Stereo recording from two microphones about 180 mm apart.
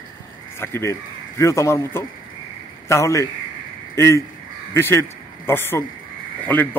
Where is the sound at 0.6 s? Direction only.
15° left (ahead or behind).